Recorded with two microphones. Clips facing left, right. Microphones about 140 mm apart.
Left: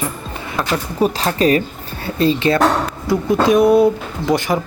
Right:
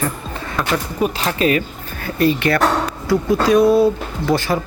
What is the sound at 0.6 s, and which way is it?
Speech, 35° left (ahead or behind).